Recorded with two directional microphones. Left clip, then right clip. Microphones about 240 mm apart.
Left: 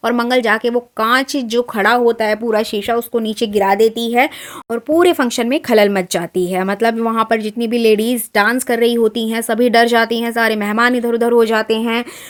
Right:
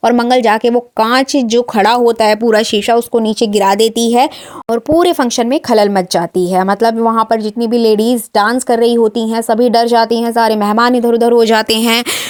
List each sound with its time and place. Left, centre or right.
0.0 s speech: right
3.5 s speech: right
4.7 s speech: centre
11.5 s speech: right